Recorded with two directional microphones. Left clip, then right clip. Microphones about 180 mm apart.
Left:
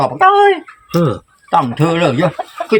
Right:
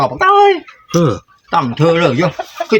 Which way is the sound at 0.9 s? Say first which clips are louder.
Right 2 dB; 45° right (ahead or behind).